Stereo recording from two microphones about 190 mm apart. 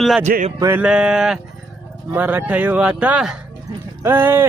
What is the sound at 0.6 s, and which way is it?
Speech, 10° right (ahead or behind).